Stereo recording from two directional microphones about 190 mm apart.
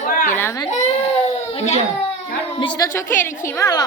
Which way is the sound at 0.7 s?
35° left (ahead or behind).